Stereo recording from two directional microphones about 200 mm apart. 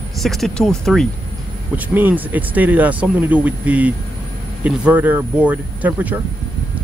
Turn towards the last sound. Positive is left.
turn(degrees=-10)  # may be behind; listen again after turning